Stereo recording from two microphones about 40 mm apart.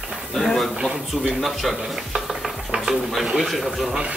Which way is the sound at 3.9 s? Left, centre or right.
Right.